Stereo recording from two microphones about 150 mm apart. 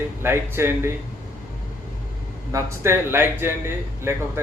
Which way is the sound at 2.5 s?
15° right (ahead or behind).